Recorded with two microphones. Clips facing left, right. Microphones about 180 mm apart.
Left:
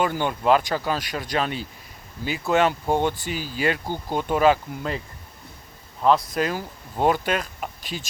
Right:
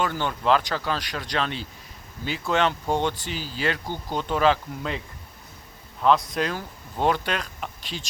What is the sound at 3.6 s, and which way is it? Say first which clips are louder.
Speech: left 3 dB; 10° left (ahead or behind).